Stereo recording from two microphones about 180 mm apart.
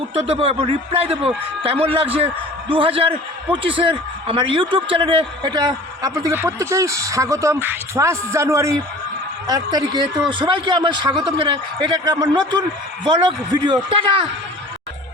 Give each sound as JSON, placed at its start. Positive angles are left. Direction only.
{"t": 0.1, "sound": "a man's voice", "side_deg": -30}